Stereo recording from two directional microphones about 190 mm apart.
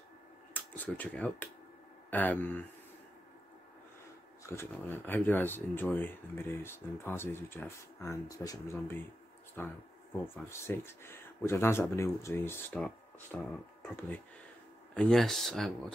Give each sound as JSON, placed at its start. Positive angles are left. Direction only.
{"t": 0.5, "sound": "speech", "side_deg": 10}
{"t": 4.4, "sound": "speech", "side_deg": 15}